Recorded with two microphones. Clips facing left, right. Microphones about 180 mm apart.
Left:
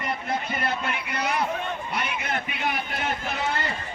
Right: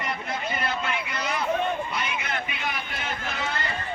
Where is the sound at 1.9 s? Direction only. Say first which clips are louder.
Left 1 dB; 55° left (ahead or behind).